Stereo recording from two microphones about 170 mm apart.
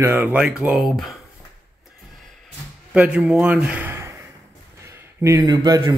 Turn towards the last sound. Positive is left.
turn(degrees=-25)  # may be behind; listen again after turning